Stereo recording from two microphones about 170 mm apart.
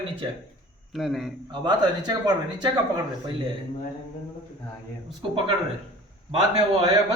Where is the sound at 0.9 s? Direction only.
Centre (ahead or behind).